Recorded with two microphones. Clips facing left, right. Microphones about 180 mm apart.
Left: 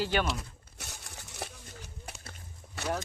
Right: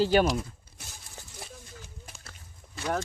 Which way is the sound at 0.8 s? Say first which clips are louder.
Left 3 dB; 70° left (ahead or behind).